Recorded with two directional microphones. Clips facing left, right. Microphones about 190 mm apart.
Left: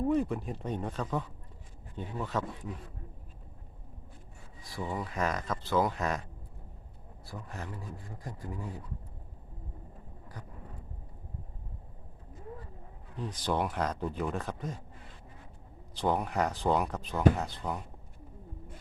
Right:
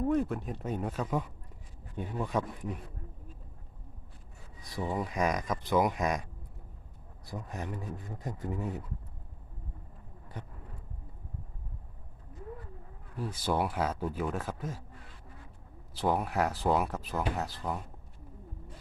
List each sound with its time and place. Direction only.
0.1 s speech: centre (ahead or behind)
4.6 s speech: 20° right (ahead or behind)
7.3 s speech: 20° right (ahead or behind)
13.1 s speech: 10° right (ahead or behind)
16.0 s speech: 5° right (ahead or behind)